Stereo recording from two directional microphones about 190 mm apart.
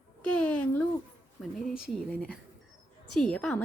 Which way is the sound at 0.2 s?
5° left (ahead or behind).